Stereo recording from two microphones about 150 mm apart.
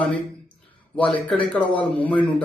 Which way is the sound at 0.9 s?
10° left (ahead or behind).